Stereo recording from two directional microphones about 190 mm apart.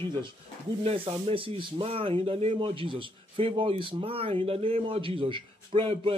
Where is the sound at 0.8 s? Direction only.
30° right (ahead or behind).